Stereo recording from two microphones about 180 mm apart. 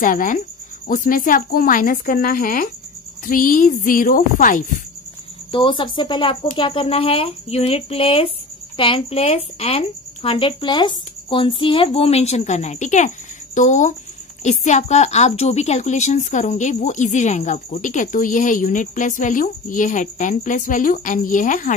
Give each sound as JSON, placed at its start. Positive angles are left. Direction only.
{"t": 0.0, "sound": "a woman's voice", "side_deg": 50}
{"t": 5.5, "sound": "a woman's voice", "side_deg": 30}